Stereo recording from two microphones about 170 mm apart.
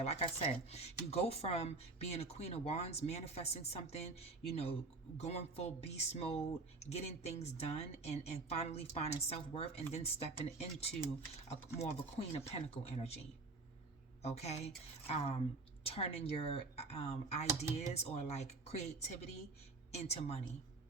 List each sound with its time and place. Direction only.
0.0 s speech: 40° left (ahead or behind)
12.5 s speech: 40° left (ahead or behind)
14.2 s speech: 40° left (ahead or behind)